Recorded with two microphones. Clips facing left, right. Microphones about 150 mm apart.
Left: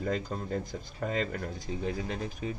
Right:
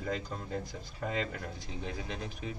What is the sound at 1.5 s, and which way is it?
Speech, 45° left (ahead or behind).